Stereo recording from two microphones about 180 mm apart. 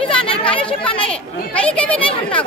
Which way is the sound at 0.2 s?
30° left (ahead or behind).